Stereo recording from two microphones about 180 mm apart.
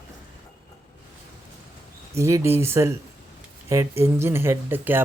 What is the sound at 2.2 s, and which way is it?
Speech, 15° right (ahead or behind).